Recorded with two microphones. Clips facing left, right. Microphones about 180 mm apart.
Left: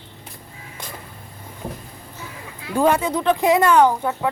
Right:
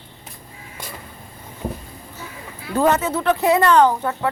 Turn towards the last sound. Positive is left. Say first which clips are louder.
# even
turn(degrees=10)  # may be behind; listen again after turning